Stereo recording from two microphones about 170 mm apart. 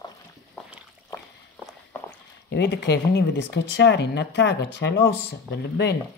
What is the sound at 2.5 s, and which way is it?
Speech, 90° left.